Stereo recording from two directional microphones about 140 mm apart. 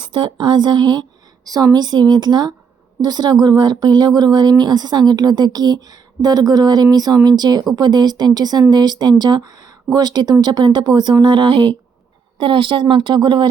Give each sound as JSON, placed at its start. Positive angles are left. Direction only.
{"t": 0.0, "sound": "a woman's voice", "side_deg": -35}